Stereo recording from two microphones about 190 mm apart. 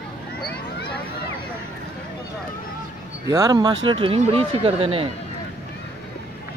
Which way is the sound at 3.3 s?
15° right (ahead or behind).